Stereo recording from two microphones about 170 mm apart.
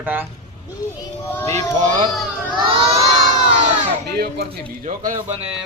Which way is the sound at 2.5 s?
30° right (ahead or behind).